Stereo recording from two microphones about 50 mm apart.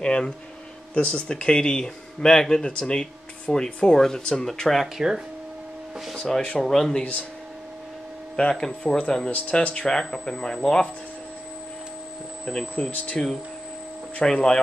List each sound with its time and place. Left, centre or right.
0.0 s speech: centre
4.9 s speech: centre
6.1 s speech: centre
8.4 s speech: centre
9.3 s speech: left
12.7 s speech: left
14.2 s speech: centre